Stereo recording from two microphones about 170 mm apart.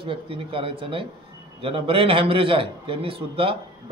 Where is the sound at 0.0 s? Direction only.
30° right (ahead or behind).